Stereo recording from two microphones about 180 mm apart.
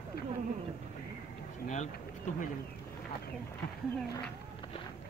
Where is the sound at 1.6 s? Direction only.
40° left (ahead or behind).